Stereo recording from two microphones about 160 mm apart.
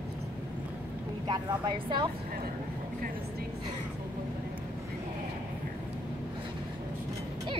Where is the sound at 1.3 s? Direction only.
30° right (ahead or behind).